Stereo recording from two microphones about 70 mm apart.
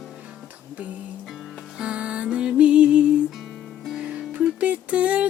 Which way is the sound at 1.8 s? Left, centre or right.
Centre.